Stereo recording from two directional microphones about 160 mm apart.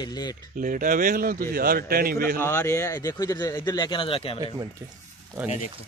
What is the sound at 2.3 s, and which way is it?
Speech, 15° left (ahead or behind).